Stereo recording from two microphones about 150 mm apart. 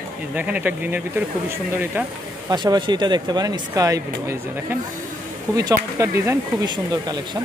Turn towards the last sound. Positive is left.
turn(degrees=-30)  # may be behind; listen again after turning